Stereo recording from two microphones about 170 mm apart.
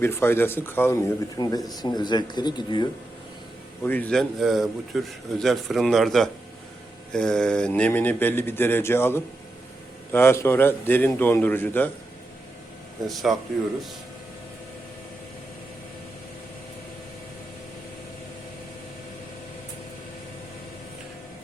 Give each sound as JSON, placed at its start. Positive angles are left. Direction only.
{"t": 0.0, "sound": "speech", "side_deg": 15}
{"t": 3.8, "sound": "a man's voice", "side_deg": 10}
{"t": 13.1, "sound": "a man's voice", "side_deg": 0}